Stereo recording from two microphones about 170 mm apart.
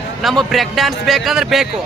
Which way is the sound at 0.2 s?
Centre (ahead or behind).